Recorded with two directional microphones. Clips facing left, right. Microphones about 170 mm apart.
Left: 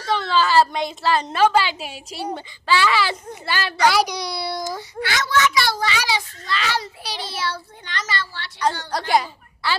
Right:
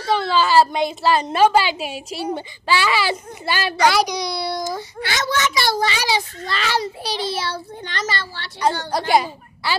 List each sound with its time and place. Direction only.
0.1 s a woman's voice: 10° right (ahead or behind)
3.8 s a child's voice: 5° left (ahead or behind)
5.0 s a child's voice: 25° right (ahead or behind)
9.1 s a woman's voice: 10° right (ahead or behind)